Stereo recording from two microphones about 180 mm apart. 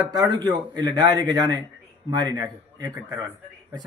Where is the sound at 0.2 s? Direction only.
25° right (ahead or behind).